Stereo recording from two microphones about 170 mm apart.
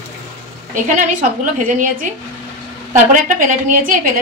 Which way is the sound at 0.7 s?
50° right (ahead or behind).